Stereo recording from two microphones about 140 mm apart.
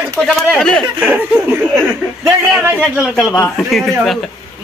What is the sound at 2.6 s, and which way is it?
Speech, 10° right (ahead or behind).